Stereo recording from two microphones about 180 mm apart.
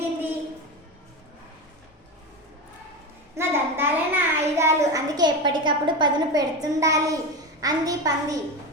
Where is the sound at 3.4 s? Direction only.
15° right (ahead or behind).